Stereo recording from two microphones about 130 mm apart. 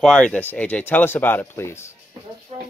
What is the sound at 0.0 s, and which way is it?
Speech, 5° left (ahead or behind).